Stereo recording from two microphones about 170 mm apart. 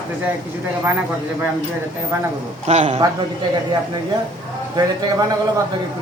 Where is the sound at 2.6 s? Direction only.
40° right (ahead or behind).